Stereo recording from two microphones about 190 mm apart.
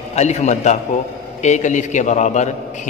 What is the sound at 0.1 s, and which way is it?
A man's voice, 35° left (ahead or behind).